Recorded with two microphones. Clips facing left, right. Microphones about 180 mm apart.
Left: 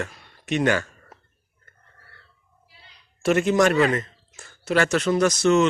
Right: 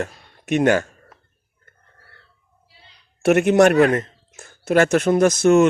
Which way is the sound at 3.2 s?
65° right (ahead or behind).